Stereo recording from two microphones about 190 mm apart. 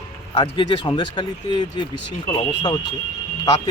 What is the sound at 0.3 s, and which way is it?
Speech, 25° left (ahead or behind).